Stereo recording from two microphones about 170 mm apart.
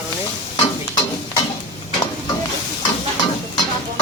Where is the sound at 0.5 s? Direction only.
25° left (ahead or behind).